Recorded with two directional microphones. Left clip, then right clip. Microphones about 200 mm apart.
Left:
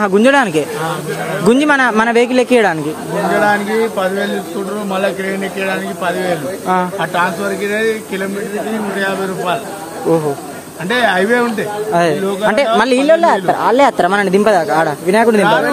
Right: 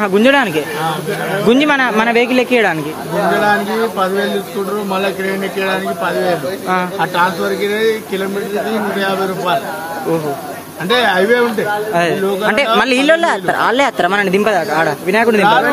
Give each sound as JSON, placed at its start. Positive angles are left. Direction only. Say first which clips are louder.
{"t": 0.0, "sound": "speech", "louder": "left 1 dB", "side_deg": 35}
{"t": 5.6, "sound": "speech", "louder": "right 3 dB", "side_deg": 10}
{"t": 7.0, "sound": "speech", "louder": "right 1 dB", "side_deg": 0}
{"t": 10.9, "sound": "speech", "louder": "right 1 dB", "side_deg": 0}
{"t": 11.9, "sound": "speech", "louder": "left 4 dB", "side_deg": 25}
{"t": 13.0, "sound": "speech", "louder": "left 2 dB", "side_deg": 0}
{"t": 13.9, "sound": "speech", "louder": "left 1 dB", "side_deg": 25}